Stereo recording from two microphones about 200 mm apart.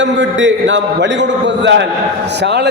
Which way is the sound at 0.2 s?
65° right (ahead or behind).